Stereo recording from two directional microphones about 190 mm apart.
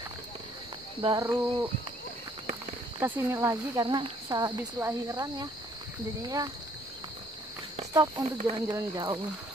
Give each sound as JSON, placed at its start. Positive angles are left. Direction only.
{"t": 1.0, "sound": "speech", "side_deg": -20}
{"t": 3.0, "sound": "speech", "side_deg": -10}
{"t": 7.9, "sound": "speech", "side_deg": -20}